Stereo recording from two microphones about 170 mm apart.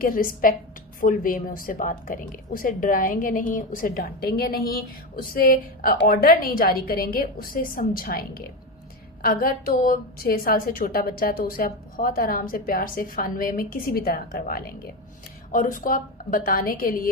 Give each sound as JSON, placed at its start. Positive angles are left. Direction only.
{"t": 0.0, "sound": "speech", "side_deg": 55}